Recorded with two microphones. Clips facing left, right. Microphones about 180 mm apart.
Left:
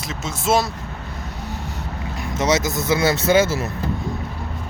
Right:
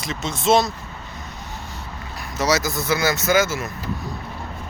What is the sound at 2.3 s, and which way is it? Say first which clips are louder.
Speech: left 1 dB; 25° left (ahead or behind).